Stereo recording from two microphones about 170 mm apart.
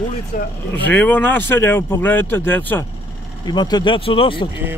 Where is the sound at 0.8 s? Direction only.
10° left (ahead or behind).